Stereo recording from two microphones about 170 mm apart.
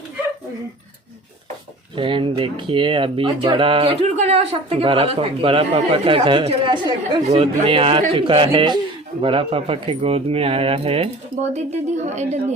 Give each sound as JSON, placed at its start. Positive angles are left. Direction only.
{"t": 2.0, "sound": "speech", "side_deg": -30}